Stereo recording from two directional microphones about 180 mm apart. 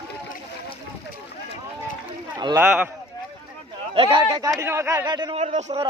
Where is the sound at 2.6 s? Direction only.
10° right (ahead or behind).